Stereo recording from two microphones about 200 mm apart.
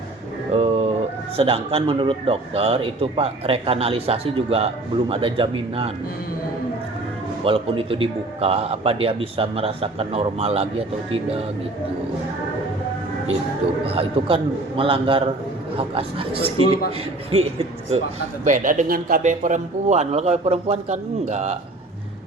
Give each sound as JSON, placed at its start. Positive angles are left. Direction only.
{"t": 0.5, "sound": "a sound", "side_deg": -30}
{"t": 1.4, "sound": "a man's voice", "side_deg": -30}
{"t": 7.4, "sound": "a man's voice", "side_deg": -25}
{"t": 13.8, "sound": "a man's voice", "side_deg": -30}
{"t": 18.4, "sound": "a man's voice", "side_deg": -40}